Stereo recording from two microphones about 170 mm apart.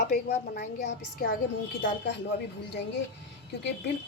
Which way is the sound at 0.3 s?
70° left (ahead or behind).